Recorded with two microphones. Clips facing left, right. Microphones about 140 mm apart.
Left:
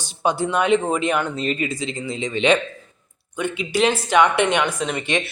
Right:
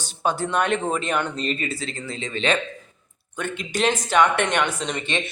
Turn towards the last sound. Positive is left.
turn(degrees=10)  # may be behind; listen again after turning